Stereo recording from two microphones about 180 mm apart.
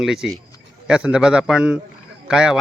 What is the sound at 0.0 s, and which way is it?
A man's voice, centre (ahead or behind).